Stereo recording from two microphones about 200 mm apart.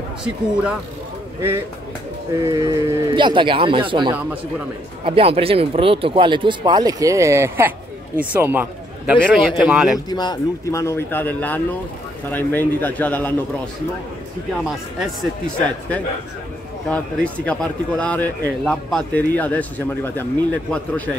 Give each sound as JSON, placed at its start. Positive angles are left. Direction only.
{"t": 2.3, "sound": "a man's voice", "side_deg": -15}
{"t": 9.9, "sound": "speech", "side_deg": 20}
{"t": 14.6, "sound": "speech", "side_deg": 0}